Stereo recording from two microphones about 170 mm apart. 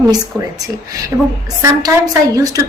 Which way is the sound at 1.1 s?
15° right (ahead or behind).